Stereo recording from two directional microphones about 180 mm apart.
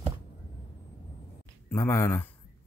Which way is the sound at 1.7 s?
15° left (ahead or behind).